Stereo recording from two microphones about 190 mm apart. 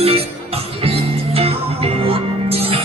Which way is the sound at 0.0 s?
30° right (ahead or behind).